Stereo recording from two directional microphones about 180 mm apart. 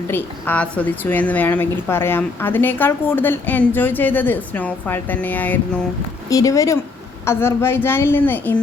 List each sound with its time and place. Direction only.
0.1 s a woman's voice: 10° left (ahead or behind)